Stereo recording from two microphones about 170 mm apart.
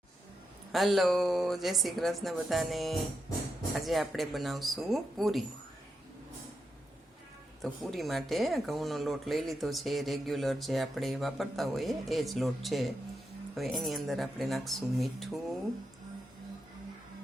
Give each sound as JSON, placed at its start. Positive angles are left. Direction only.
{"t": 0.7, "sound": "speech", "side_deg": 0}
{"t": 7.6, "sound": "speech", "side_deg": 0}